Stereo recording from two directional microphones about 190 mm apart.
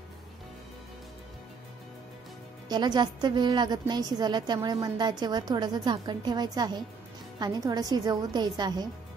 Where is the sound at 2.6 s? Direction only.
20° right (ahead or behind).